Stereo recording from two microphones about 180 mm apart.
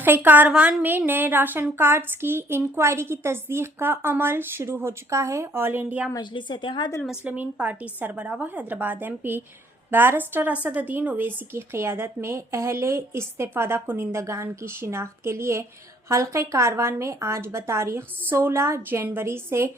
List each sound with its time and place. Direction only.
0.0 s a woman's voice: 10° right (ahead or behind)
6.1 s speech: 25° left (ahead or behind)
7.0 s a woman's voice: 5° right (ahead or behind)